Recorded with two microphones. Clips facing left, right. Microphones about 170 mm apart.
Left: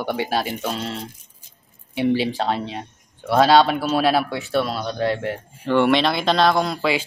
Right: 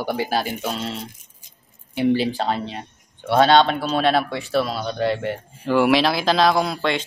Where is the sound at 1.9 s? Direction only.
Centre (ahead or behind).